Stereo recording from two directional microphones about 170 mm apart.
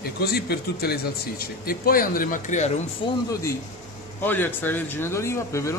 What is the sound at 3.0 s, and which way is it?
Speech, 30° left (ahead or behind).